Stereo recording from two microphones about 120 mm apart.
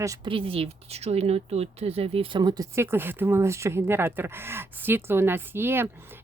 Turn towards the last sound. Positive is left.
turn(degrees=-20)  # may be behind; listen again after turning